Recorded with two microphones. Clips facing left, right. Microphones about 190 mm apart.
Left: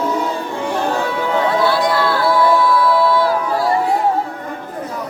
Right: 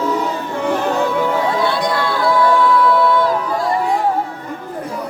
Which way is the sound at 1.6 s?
20° right (ahead or behind).